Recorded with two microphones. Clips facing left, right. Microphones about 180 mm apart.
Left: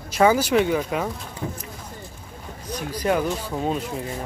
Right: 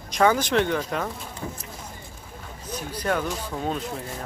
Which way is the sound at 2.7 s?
10° left (ahead or behind).